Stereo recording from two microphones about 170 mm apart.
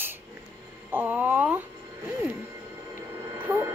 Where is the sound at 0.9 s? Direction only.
10° right (ahead or behind).